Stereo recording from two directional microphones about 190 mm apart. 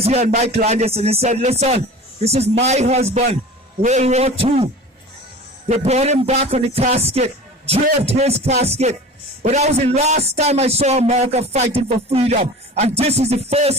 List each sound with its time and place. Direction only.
0.0 s a man's voice: 35° right (ahead or behind)